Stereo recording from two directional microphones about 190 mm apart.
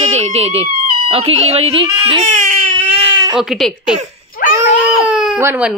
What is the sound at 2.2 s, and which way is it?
Baby cry, 40° right (ahead or behind).